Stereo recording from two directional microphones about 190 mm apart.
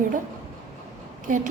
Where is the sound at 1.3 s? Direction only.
45° right (ahead or behind).